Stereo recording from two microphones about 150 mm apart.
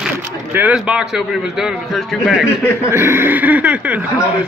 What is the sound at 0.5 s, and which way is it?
A man's voice, 10° right (ahead or behind).